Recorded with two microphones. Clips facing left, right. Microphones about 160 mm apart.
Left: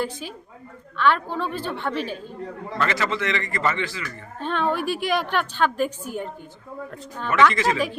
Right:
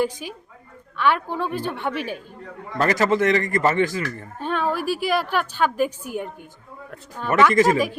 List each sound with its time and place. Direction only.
0.0 s a woman's voice: 10° right (ahead or behind)
2.7 s a man's voice: 40° right (ahead or behind)
4.4 s a woman's voice: 10° right (ahead or behind)
7.5 s a man's voice: 45° right (ahead or behind)